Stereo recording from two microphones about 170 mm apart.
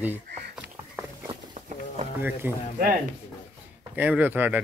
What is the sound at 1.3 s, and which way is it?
Run, 40° right (ahead or behind).